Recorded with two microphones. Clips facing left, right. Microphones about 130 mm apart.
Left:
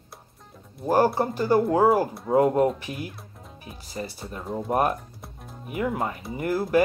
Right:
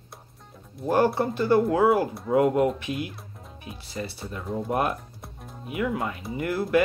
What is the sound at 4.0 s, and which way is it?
Speech, 30° left (ahead or behind).